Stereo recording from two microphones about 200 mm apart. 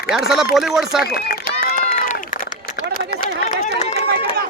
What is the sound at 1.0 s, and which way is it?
Run, 50° left (ahead or behind).